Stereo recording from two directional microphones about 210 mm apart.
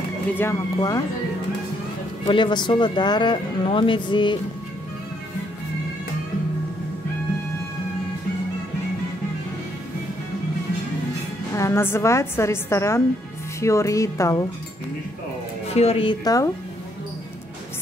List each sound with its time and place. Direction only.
0.4 s a woman's voice: 15° left (ahead or behind)
2.2 s speech: 20° left (ahead or behind)
11.5 s a woman's voice: 10° left (ahead or behind)
15.7 s speech: 30° left (ahead or behind)